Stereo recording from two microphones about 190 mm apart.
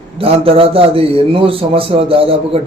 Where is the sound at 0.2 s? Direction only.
30° right (ahead or behind).